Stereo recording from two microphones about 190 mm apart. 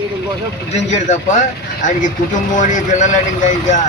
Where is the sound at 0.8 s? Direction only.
35° left (ahead or behind).